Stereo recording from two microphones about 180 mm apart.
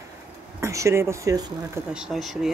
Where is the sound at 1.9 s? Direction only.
Centre (ahead or behind).